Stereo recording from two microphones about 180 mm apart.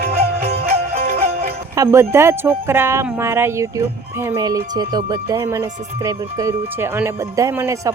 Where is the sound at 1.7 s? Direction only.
15° right (ahead or behind).